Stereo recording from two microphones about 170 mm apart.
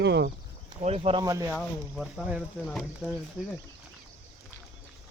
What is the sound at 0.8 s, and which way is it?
Speech, 35° right (ahead or behind).